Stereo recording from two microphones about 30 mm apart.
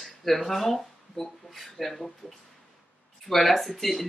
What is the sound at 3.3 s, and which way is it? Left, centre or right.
Speech, centre.